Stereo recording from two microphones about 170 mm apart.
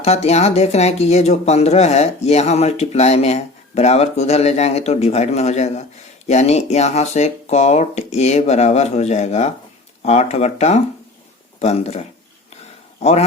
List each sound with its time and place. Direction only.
0.0 s a man's voice: 40° left (ahead or behind)